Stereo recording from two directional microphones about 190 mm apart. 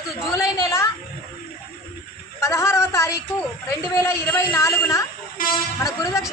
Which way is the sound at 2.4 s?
15° left (ahead or behind).